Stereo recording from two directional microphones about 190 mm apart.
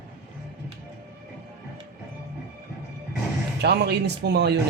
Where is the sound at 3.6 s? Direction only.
60° right (ahead or behind).